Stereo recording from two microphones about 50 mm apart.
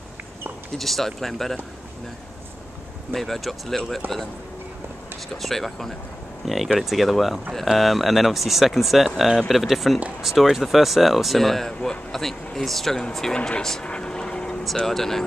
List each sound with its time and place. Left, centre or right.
0.7 s speech: centre
3.1 s speech: centre
4.0 s speech: right
5.3 s speech: centre
13.8 s vehicle: centre
14.9 s speech: centre